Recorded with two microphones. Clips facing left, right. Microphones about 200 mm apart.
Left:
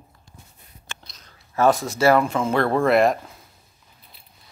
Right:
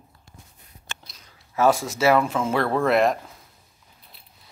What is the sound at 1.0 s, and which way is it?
Speech, 5° right (ahead or behind).